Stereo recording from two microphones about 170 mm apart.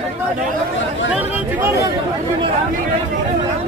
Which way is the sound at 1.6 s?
15° right (ahead or behind).